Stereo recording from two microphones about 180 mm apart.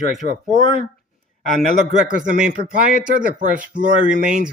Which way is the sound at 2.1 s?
50° right (ahead or behind).